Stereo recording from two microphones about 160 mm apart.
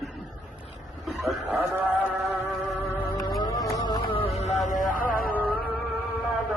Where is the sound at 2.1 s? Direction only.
5° right (ahead or behind).